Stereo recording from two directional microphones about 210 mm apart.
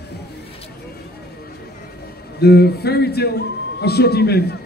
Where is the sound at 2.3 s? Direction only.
50° left (ahead or behind).